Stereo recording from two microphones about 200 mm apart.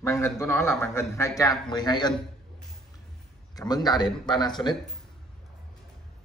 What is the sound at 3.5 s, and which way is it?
Speech, 20° left (ahead or behind).